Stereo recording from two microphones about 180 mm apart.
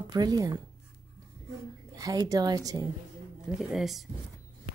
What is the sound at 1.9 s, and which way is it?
Speech, 20° right (ahead or behind).